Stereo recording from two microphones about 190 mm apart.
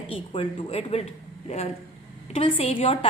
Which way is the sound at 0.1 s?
30° left (ahead or behind).